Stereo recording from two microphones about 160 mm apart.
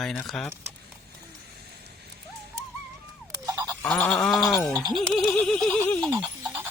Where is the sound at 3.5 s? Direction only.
25° right (ahead or behind).